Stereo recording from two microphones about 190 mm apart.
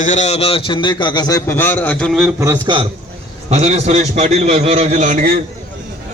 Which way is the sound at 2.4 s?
20° right (ahead or behind).